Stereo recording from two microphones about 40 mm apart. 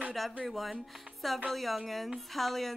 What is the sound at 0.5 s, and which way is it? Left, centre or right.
A woman's voice, centre.